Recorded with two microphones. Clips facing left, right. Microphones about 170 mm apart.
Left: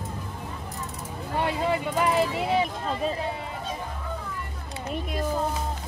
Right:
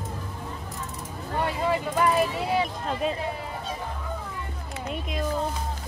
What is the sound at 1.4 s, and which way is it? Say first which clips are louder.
Vehicle: even; 20° left (ahead or behind).